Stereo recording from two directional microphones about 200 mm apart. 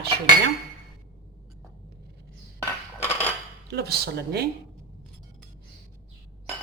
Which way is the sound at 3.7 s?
55° right (ahead or behind).